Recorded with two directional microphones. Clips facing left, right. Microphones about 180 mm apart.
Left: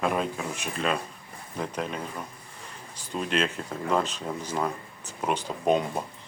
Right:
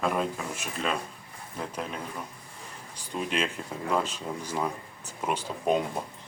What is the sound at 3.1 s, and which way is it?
Speech, 10° right (ahead or behind).